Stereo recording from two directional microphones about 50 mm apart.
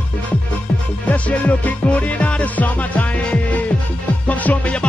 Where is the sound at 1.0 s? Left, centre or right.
Left.